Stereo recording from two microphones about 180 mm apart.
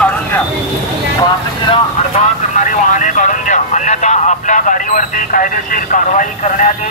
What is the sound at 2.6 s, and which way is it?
Vehicle, 45° left (ahead or behind).